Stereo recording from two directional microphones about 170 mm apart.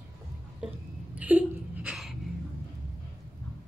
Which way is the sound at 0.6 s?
5° right (ahead or behind).